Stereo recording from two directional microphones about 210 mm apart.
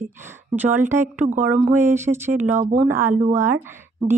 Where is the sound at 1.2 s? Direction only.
35° right (ahead or behind).